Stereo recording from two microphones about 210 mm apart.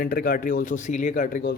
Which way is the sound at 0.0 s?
45° left (ahead or behind).